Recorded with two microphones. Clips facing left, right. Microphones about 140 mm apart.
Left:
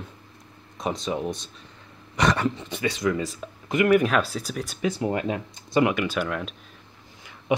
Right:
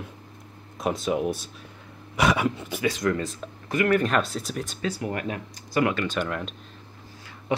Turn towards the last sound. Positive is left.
turn(degrees=5)  # may be behind; listen again after turning